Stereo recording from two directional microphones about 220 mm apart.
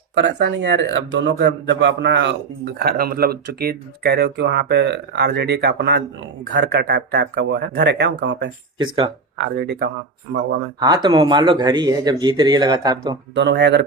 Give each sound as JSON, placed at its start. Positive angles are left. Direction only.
{"t": 0.1, "sound": "speech", "side_deg": -50}
{"t": 10.8, "sound": "speech", "side_deg": -20}
{"t": 13.3, "sound": "speech", "side_deg": -50}